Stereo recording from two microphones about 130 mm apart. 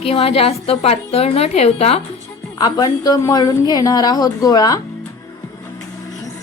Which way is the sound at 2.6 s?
30° left (ahead or behind).